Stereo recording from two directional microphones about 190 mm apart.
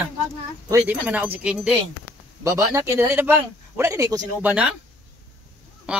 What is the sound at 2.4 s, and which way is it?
Speech, 15° right (ahead or behind).